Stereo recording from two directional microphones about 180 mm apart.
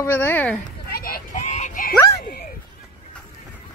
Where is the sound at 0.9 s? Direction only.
55° left (ahead or behind).